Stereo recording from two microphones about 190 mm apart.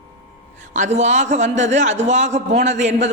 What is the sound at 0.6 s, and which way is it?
A man's voice, 40° right (ahead or behind).